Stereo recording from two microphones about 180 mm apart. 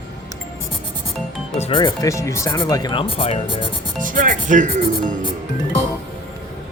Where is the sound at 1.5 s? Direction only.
30° left (ahead or behind).